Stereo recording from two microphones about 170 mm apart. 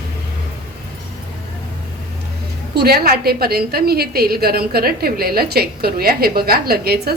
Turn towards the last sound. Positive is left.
turn(degrees=-65)  # may be behind; listen again after turning